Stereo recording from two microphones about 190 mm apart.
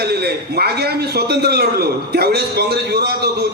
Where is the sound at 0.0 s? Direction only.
55° right (ahead or behind).